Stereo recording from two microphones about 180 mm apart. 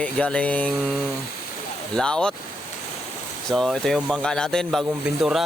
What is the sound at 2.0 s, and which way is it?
Speech, 5° left (ahead or behind).